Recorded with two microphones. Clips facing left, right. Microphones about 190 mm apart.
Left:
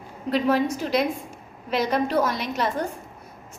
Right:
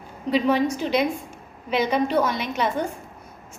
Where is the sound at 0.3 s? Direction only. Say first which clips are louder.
Right 1 dB; centre (ahead or behind).